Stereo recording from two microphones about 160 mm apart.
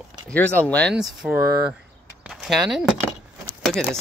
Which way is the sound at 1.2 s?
10° right (ahead or behind).